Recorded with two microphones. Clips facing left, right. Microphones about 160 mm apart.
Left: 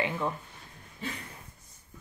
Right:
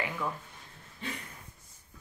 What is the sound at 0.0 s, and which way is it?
Speech, 25° left (ahead or behind).